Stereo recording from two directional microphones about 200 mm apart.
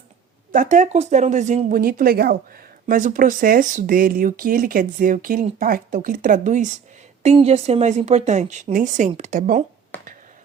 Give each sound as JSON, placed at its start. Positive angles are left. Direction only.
{"t": 0.5, "sound": "a woman's voice", "side_deg": -40}